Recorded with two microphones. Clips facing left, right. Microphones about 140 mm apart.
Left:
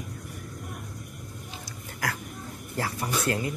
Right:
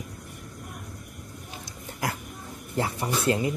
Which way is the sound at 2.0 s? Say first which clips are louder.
Right 1 dB; 25° right (ahead or behind).